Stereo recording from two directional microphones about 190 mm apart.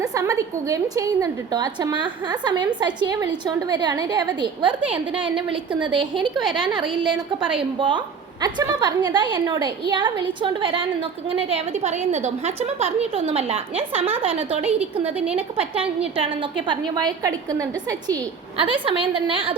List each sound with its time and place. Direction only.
0.1 s a woman's voice: 15° right (ahead or behind)
6.4 s a woman's voice: 5° right (ahead or behind)
7.8 s a woman's voice: 25° right (ahead or behind)
14.6 s a woman's voice: 5° right (ahead or behind)
15.4 s a woman's voice: 30° right (ahead or behind)